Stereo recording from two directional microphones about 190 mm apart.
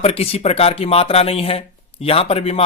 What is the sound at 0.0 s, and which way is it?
Speech, 30° left (ahead or behind).